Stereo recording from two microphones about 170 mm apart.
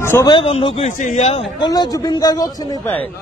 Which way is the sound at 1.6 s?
25° left (ahead or behind).